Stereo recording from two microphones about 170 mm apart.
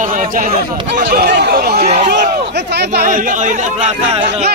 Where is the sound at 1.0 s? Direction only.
70° right (ahead or behind).